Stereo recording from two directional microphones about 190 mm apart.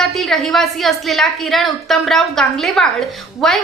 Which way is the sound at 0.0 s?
Centre (ahead or behind).